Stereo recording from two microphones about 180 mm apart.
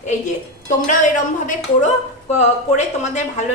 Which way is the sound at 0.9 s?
45° left (ahead or behind).